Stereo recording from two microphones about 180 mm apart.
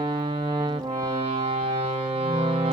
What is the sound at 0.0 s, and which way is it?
Music, 25° right (ahead or behind).